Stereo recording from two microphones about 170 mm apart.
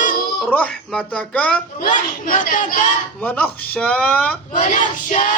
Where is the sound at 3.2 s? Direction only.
10° left (ahead or behind).